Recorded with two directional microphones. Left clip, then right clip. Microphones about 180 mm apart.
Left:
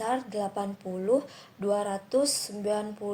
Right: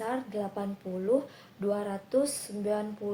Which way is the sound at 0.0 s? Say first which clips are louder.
Left 4 dB; 45° left (ahead or behind).